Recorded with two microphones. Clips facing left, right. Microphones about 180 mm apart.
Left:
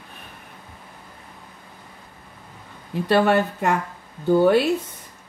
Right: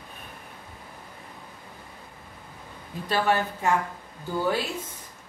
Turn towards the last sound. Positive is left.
turn(degrees=65)  # may be behind; listen again after turning